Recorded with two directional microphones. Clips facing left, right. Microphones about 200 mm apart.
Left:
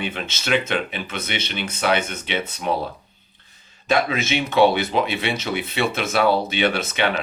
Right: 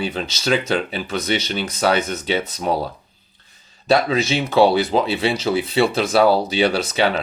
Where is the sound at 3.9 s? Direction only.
35° right (ahead or behind).